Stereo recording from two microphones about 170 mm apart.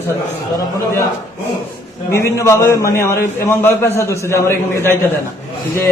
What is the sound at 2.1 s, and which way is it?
A man's voice, 15° left (ahead or behind).